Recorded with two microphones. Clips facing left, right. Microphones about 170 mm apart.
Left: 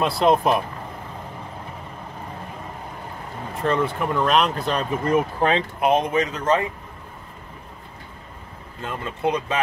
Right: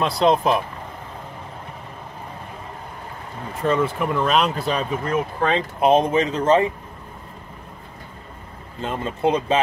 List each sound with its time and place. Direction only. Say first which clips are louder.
0.0 s speech: even; centre (ahead or behind)
3.6 s speech: right 2 dB; centre (ahead or behind)
5.0 s speech: left 5 dB; 10° left (ahead or behind)
5.8 s speech: right 5 dB; 30° right (ahead or behind)
8.8 s speech: right 3 dB; 30° right (ahead or behind)